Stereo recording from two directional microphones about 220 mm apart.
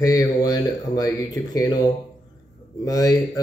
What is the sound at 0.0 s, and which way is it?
A man's voice, 15° left (ahead or behind).